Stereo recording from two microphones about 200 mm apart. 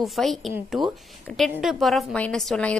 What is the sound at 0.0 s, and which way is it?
A woman's voice, centre (ahead or behind).